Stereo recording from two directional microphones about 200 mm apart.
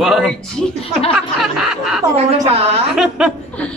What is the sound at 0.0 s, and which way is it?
Speech, centre (ahead or behind).